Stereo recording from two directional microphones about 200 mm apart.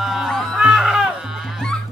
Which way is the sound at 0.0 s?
Centre (ahead or behind).